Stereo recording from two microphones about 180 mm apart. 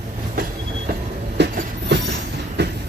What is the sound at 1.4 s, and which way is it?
Train, 75° right (ahead or behind).